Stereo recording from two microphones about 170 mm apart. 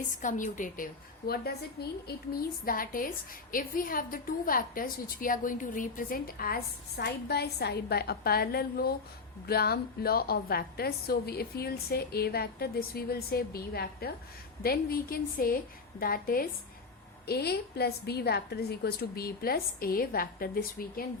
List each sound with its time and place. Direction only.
0.2 s a woman's voice: 50° left (ahead or behind)
1.3 s a woman's voice: 70° left (ahead or behind)